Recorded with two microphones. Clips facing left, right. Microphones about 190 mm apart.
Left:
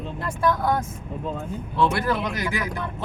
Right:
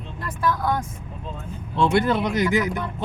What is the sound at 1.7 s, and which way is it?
Speech, 25° right (ahead or behind).